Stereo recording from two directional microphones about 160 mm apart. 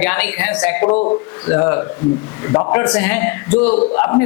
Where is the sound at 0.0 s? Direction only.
10° left (ahead or behind).